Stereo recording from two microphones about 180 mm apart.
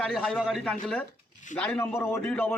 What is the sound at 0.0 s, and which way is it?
A man's voice, 5° left (ahead or behind).